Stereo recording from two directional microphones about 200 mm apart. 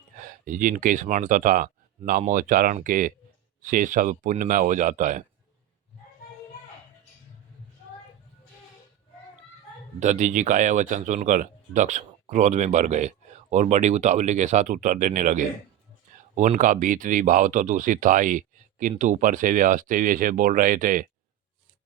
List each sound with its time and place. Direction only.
0.2 s speech: 40° right (ahead or behind)
10.0 s speech: 35° right (ahead or behind)